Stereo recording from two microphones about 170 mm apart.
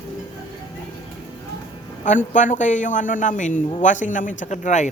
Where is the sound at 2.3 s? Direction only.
45° left (ahead or behind).